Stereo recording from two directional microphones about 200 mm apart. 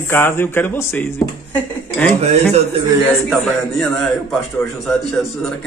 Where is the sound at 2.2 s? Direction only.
30° right (ahead or behind).